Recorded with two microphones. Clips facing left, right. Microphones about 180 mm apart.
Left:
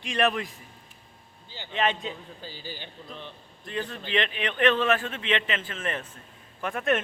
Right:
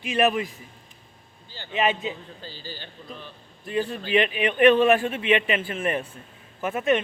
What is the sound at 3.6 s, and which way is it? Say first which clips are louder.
Speech: right 6 dB; 10° right (ahead or behind).